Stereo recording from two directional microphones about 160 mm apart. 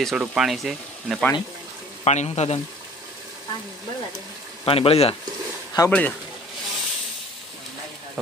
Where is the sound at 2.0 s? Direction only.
45° left (ahead or behind).